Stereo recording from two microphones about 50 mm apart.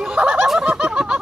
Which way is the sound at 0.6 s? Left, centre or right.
Centre.